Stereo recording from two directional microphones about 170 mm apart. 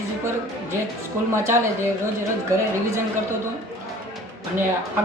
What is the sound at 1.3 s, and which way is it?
Speech, 15° right (ahead or behind).